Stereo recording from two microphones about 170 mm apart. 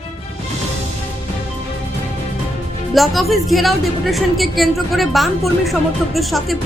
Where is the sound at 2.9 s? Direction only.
Centre (ahead or behind).